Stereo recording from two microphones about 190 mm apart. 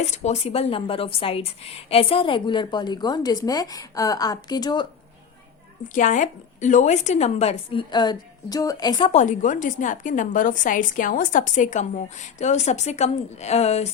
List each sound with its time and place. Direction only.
0.0 s speech: 35° left (ahead or behind)
5.9 s a woman's voice: 40° left (ahead or behind); by 9.1 s 25° left (ahead or behind)
9.1 s a woman's voice: 40° left (ahead or behind)